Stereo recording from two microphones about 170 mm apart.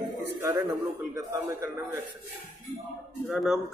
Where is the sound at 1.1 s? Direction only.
20° right (ahead or behind).